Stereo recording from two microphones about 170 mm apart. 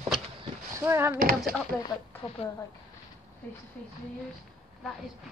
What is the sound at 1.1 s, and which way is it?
Speech, 60° right (ahead or behind).